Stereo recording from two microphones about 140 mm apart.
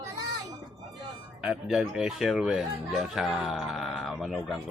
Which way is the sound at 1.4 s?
5° right (ahead or behind).